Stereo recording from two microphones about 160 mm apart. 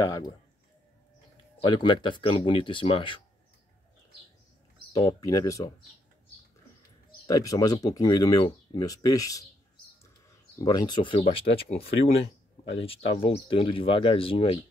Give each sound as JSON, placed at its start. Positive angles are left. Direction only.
{"t": 0.0, "sound": "speech", "side_deg": 20}
{"t": 1.6, "sound": "speech", "side_deg": 30}
{"t": 5.0, "sound": "speech", "side_deg": 20}
{"t": 7.2, "sound": "speech", "side_deg": 20}
{"t": 10.6, "sound": "speech", "side_deg": 25}